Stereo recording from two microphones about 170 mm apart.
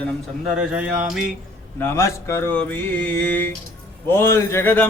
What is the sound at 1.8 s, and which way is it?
Mantra, 15° left (ahead or behind).